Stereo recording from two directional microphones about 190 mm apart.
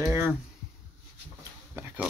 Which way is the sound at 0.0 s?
15° right (ahead or behind).